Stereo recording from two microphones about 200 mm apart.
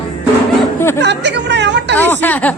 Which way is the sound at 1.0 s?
60° right (ahead or behind).